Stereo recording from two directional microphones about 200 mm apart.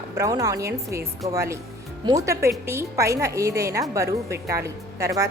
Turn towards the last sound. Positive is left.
turn(degrees=-15)  # may be behind; listen again after turning